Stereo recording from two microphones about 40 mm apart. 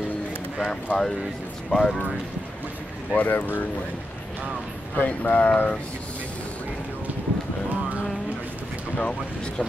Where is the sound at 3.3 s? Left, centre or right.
Left.